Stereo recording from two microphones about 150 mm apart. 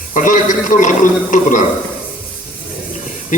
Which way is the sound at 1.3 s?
60° left (ahead or behind).